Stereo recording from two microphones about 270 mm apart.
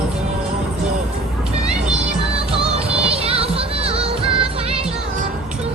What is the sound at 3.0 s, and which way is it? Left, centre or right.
Music, right.